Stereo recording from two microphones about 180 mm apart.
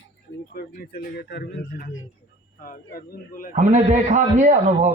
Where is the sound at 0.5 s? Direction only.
55° left (ahead or behind).